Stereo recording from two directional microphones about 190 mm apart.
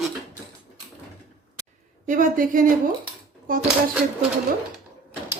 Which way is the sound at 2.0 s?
45° right (ahead or behind).